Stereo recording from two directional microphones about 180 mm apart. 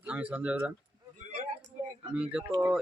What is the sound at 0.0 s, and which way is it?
Speech, 10° right (ahead or behind).